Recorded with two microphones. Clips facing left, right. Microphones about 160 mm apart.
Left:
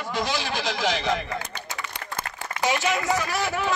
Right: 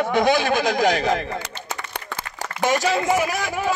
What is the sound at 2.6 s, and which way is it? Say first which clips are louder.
Speech: right 4 dB; 40° right (ahead or behind).